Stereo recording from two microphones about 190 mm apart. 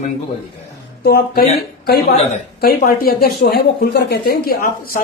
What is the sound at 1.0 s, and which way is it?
A woman's voice, 55° left (ahead or behind).